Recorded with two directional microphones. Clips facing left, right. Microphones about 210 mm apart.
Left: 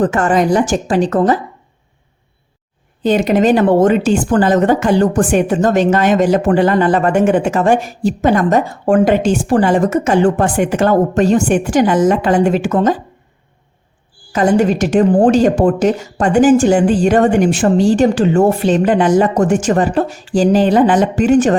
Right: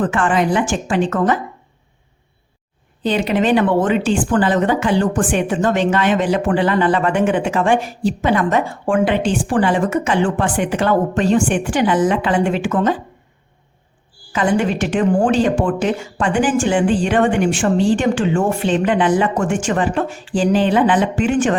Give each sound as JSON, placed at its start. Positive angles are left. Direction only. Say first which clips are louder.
{"t": 0.0, "sound": "a woman's voice", "louder": "left 4 dB", "side_deg": 40}
{"t": 3.0, "sound": "speech", "louder": "left 5 dB", "side_deg": 45}
{"t": 14.3, "sound": "a woman's voice", "louder": "left 5 dB", "side_deg": 40}